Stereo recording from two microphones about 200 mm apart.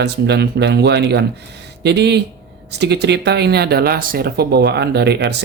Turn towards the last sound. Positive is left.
turn(degrees=-55)  # may be behind; listen again after turning